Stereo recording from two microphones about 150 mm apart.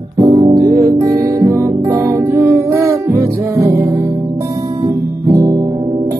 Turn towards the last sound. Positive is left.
turn(degrees=-25)  # may be behind; listen again after turning